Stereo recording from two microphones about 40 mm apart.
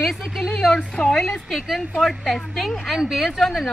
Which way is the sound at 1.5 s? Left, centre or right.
Centre.